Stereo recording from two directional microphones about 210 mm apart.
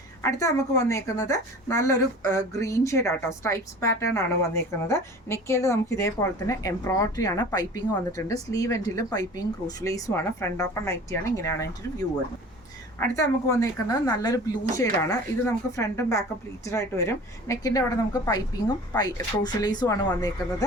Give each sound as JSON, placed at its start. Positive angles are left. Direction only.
{"t": 0.2, "sound": "a woman's voice", "side_deg": 15}
{"t": 13.0, "sound": "a woman's voice", "side_deg": 15}